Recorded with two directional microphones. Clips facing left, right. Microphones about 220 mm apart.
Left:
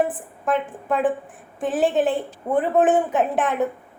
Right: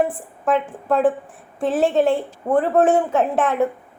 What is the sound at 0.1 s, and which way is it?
A woman's voice, centre (ahead or behind).